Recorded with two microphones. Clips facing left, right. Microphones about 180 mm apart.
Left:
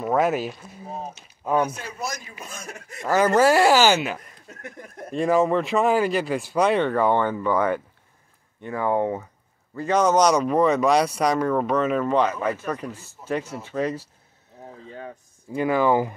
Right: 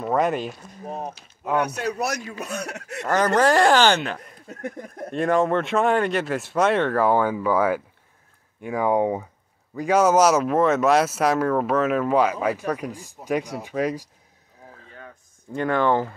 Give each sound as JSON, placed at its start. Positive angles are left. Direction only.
{"t": 0.0, "sound": "speech", "side_deg": 0}
{"t": 1.6, "sound": "speech", "side_deg": -70}
{"t": 3.1, "sound": "speech", "side_deg": 10}
{"t": 15.5, "sound": "speech", "side_deg": 5}